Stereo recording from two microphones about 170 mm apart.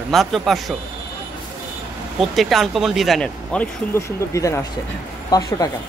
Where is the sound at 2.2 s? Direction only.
Centre (ahead or behind).